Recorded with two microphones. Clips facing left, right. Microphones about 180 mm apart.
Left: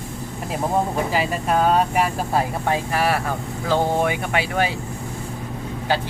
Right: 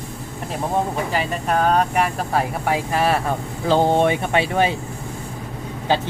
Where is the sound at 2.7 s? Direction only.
15° right (ahead or behind).